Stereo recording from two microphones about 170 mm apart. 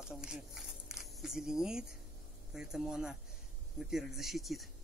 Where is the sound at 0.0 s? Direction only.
5° right (ahead or behind).